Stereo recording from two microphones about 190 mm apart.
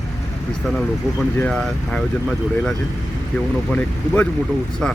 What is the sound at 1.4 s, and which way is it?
Speech, 5° left (ahead or behind).